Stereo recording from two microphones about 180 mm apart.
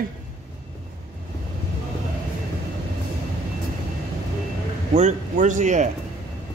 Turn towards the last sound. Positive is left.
turn(degrees=-40)  # may be behind; listen again after turning